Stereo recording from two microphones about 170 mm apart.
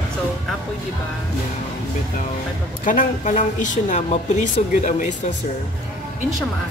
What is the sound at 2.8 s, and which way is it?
Speech, 50° left (ahead or behind).